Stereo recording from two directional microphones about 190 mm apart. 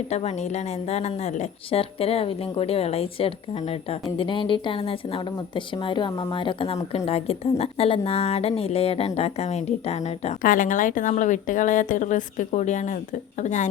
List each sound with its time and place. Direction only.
0.1 s a woman's voice: 35° left (ahead or behind)